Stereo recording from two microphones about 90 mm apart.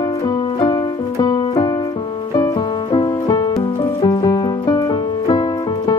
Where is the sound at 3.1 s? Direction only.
50° left (ahead or behind).